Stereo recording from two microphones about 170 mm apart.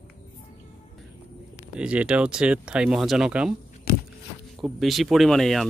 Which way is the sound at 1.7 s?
5° right (ahead or behind).